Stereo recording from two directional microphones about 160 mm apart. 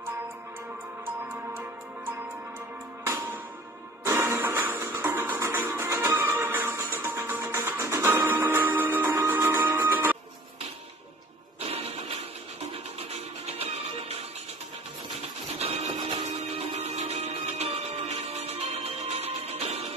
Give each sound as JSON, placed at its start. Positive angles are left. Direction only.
{"t": 1.3, "sound": "music", "side_deg": -15}
{"t": 11.6, "sound": "music", "side_deg": -40}
{"t": 15.6, "sound": "printer", "side_deg": -45}
{"t": 16.0, "sound": "music", "side_deg": -30}